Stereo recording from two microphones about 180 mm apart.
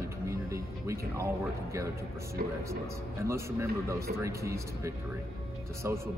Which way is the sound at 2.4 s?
50° right (ahead or behind).